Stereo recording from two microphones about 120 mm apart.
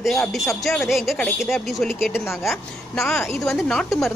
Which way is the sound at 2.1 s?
20° left (ahead or behind).